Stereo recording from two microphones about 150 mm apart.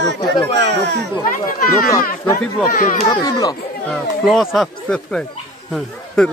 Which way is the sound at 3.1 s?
25° left (ahead or behind).